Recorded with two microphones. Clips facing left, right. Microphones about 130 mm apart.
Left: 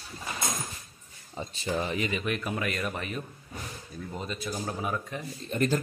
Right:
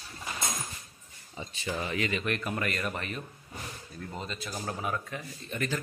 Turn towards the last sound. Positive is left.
turn(degrees=35)  # may be behind; listen again after turning